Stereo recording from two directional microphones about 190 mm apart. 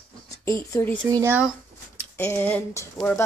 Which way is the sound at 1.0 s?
15° right (ahead or behind).